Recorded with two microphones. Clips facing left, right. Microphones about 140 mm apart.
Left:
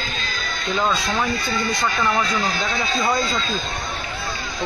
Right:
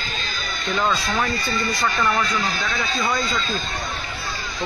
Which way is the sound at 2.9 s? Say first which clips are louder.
Left 3 dB; 35° left (ahead or behind).